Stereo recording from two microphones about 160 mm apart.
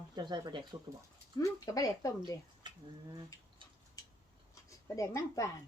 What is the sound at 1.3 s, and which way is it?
Speech, 20° left (ahead or behind).